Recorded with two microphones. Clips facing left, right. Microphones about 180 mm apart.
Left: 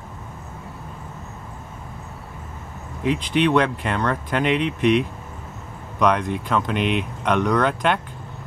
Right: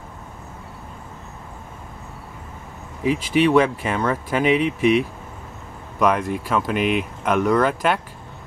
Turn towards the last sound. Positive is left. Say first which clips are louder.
# right 1 dB
turn(degrees=-5)  # may be behind; listen again after turning